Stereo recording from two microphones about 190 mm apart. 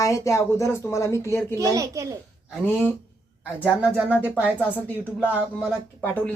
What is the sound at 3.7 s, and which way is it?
Speech, 5° right (ahead or behind).